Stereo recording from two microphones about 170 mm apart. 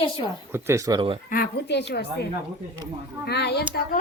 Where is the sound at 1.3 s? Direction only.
70° left (ahead or behind).